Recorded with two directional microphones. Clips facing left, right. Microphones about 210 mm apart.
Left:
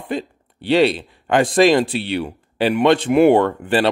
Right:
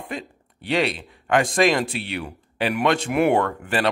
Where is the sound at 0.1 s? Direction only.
30° left (ahead or behind).